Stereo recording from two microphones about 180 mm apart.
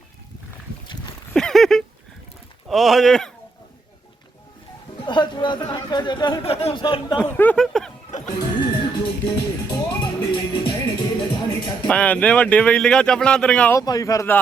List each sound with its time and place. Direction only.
1.3 s a sound: 5° left (ahead or behind)
2.6 s speech: centre (ahead or behind)
5.0 s speech: 25° left (ahead or behind)
7.3 s speech: 5° left (ahead or behind)
9.2 s music: 20° left (ahead or behind)
11.9 s speech: 5° left (ahead or behind)
13.7 s speech: 20° left (ahead or behind)